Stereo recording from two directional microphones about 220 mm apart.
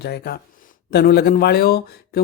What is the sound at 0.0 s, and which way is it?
Speech, 45° left (ahead or behind).